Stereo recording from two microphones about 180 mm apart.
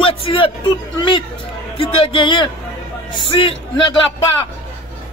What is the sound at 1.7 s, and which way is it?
A man's voice, 30° left (ahead or behind).